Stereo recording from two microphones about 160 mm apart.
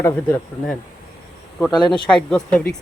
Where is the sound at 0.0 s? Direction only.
15° left (ahead or behind).